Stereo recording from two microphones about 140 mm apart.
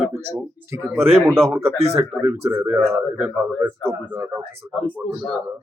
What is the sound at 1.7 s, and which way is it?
Speech, 45° right (ahead or behind).